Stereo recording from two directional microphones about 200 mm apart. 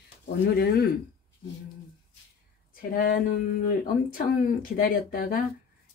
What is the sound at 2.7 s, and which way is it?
Speech, 45° left (ahead or behind).